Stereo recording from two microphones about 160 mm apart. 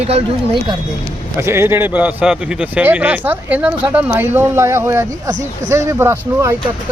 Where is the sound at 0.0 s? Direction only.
40° right (ahead or behind).